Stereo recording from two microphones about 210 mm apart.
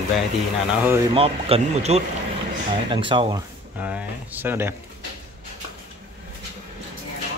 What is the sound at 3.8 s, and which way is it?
Speech, 5° right (ahead or behind).